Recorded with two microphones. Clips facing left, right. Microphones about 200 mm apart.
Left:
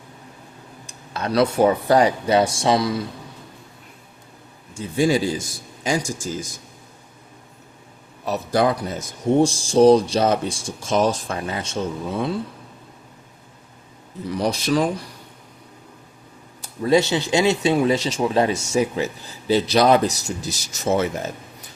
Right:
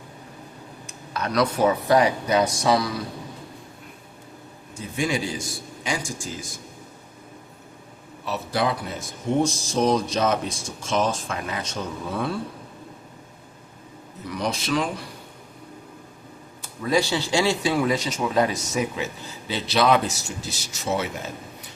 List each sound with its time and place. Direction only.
0.9 s a man's voice: 30° left (ahead or behind)
4.7 s speech: 30° left (ahead or behind)
8.2 s speech: 45° left (ahead or behind)
9.4 s speech: 30° left (ahead or behind)
14.3 s speech: 30° left (ahead or behind)
16.8 s a man's voice: 25° left (ahead or behind)
19.5 s speech: 40° left (ahead or behind)